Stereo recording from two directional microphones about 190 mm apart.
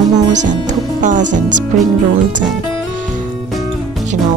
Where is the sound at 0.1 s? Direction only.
40° right (ahead or behind).